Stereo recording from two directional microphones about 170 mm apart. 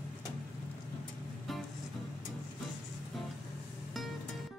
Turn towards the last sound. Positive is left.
turn(degrees=0)  # may be behind; listen again after turning